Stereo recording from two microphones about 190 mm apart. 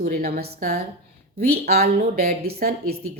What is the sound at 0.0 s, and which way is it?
A woman's voice, 45° right (ahead or behind).